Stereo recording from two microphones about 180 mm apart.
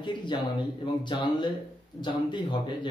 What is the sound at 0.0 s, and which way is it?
Speech, 25° left (ahead or behind).